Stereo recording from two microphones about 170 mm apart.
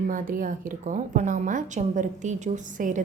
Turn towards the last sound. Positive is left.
turn(degrees=-50)  # may be behind; listen again after turning